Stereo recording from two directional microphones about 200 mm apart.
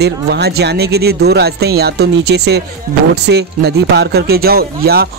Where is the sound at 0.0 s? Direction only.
55° right (ahead or behind).